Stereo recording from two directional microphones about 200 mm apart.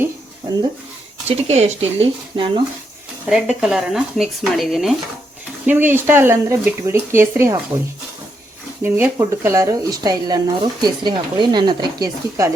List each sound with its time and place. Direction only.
1.5 s speech: 35° right (ahead or behind)
3.2 s speech: centre (ahead or behind)
8.8 s speech: 10° right (ahead or behind)